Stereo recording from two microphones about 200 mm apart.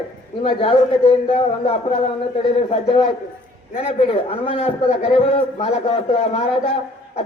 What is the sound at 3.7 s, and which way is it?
A man's voice, 30° left (ahead or behind).